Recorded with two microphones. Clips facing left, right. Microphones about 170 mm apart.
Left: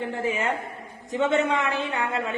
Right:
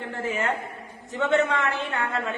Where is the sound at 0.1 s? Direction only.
15° left (ahead or behind).